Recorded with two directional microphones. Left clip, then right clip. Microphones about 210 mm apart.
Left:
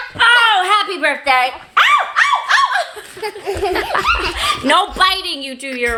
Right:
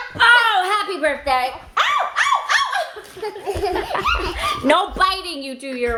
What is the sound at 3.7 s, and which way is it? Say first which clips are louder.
Laughter: left 6 dB; 5° left (ahead or behind).